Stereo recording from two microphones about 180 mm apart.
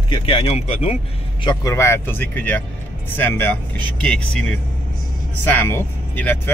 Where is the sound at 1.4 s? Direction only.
25° left (ahead or behind).